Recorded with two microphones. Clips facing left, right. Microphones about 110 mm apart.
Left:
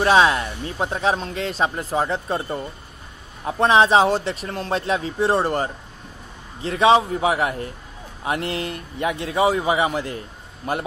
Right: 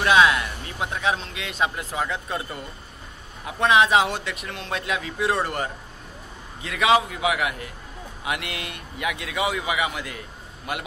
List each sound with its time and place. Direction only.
0.0 s speech: 35° left (ahead or behind)